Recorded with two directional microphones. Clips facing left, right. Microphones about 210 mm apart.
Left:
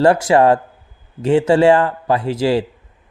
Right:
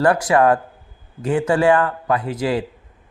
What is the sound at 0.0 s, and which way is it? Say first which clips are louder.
Speech: left 3 dB; 25° left (ahead or behind).